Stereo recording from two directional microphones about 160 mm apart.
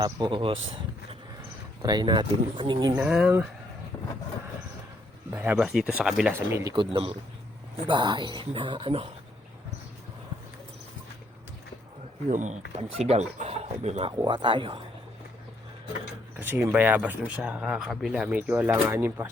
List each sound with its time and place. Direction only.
0.0 s speech: 30° right (ahead or behind)
1.8 s speech: 25° right (ahead or behind)
2.9 s speech: 10° right (ahead or behind)
3.9 s vehicle: 25° left (ahead or behind)
5.3 s speech: 10° right (ahead or behind)
6.7 s speech: 35° right (ahead or behind)
12.3 s speech: 50° right (ahead or behind)
14.2 s speech: 30° right (ahead or behind)
16.4 s speech: 10° right (ahead or behind)